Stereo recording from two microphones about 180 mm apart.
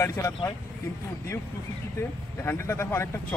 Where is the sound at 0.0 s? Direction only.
15° left (ahead or behind).